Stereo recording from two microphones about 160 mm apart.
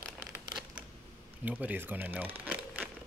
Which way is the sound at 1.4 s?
10° right (ahead or behind).